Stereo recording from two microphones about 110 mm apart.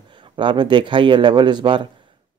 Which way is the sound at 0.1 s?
45° right (ahead or behind).